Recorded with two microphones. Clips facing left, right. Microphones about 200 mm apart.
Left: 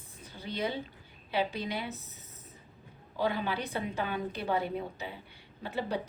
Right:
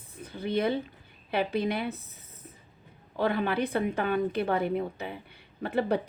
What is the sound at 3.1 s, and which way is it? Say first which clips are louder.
Speech: right 4 dB; 60° right (ahead or behind).